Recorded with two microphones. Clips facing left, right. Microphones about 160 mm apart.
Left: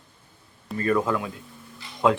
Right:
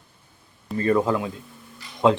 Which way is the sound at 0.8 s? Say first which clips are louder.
Right 3 dB; 30° right (ahead or behind).